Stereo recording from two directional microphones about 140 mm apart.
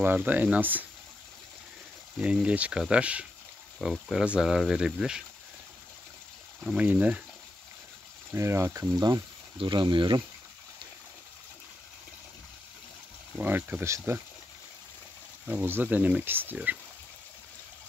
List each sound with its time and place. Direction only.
0.0 s speech: 15° right (ahead or behind)
2.1 s speech: 5° right (ahead or behind)
6.6 s speech: 5° right (ahead or behind)
8.4 s speech: 20° right (ahead or behind)
13.4 s speech: 15° right (ahead or behind)
15.4 s speech: 15° right (ahead or behind)